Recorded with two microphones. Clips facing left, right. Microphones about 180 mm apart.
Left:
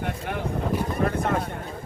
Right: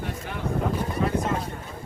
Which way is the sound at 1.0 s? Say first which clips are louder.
Even; 60° left (ahead or behind).